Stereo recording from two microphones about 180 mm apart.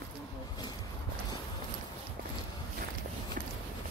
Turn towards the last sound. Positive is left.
turn(degrees=-50)  # may be behind; listen again after turning